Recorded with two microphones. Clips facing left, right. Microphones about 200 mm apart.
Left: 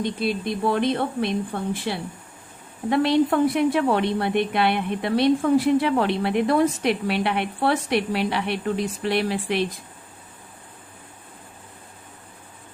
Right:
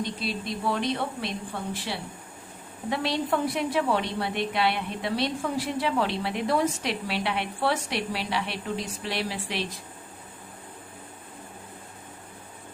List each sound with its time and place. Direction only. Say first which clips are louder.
0.0 s a woman's voice: left 6 dB; 55° left (ahead or behind)
2.9 s a woman's voice: left 8 dB; 60° left (ahead or behind)